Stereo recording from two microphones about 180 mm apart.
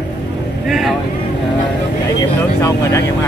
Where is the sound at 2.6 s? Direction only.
15° left (ahead or behind).